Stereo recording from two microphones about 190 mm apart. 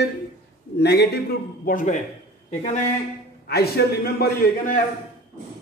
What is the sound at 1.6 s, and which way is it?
A man's voice, 40° left (ahead or behind).